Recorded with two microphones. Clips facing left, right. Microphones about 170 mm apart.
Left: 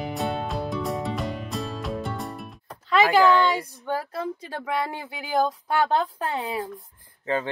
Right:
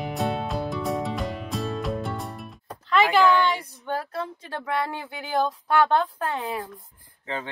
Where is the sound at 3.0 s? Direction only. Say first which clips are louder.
Left 1 dB; 40° left (ahead or behind).